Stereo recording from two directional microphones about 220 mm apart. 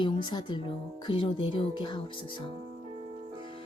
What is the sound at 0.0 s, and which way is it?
Speech, 20° left (ahead or behind).